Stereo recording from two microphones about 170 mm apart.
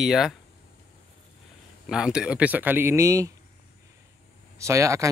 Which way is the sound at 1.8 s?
5° right (ahead or behind).